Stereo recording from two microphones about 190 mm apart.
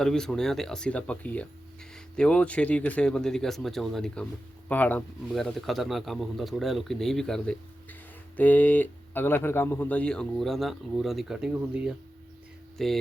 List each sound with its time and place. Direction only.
0.0 s speech: 5° left (ahead or behind)